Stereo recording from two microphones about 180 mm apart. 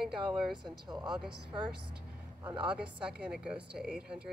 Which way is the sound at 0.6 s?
25° right (ahead or behind).